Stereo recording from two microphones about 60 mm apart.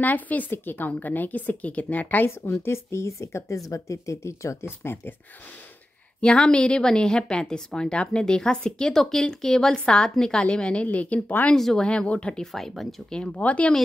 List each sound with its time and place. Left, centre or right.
0.0 s a woman's voice: left
2.4 s speech: left
6.2 s a woman's voice: centre
11.5 s a woman's voice: centre
12.5 s speech: centre
13.1 s a woman's voice: centre